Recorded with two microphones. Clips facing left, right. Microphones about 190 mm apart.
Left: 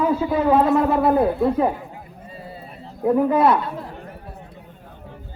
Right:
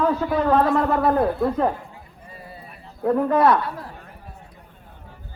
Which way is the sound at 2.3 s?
25° left (ahead or behind).